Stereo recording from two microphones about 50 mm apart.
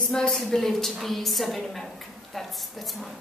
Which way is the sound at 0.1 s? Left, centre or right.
Centre.